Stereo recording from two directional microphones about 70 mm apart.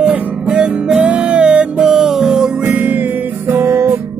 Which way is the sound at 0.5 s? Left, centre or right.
Centre.